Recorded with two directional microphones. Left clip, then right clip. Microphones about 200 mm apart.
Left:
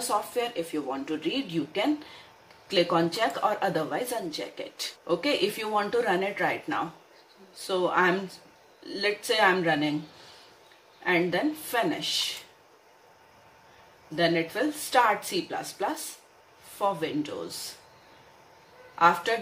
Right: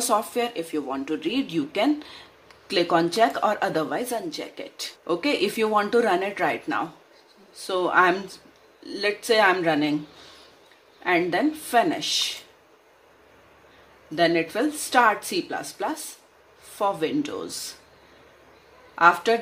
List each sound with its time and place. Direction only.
0.1 s speech: 55° right (ahead or behind)
11.1 s speech: 55° right (ahead or behind)
14.1 s speech: 55° right (ahead or behind)
18.9 s speech: 55° right (ahead or behind)